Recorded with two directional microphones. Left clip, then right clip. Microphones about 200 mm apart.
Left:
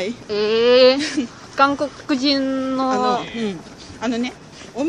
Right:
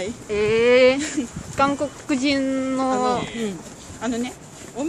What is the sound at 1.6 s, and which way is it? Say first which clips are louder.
Speech: left 4 dB; 5° left (ahead or behind).